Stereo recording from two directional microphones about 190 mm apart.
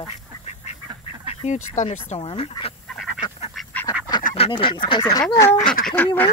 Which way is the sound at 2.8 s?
Centre (ahead or behind).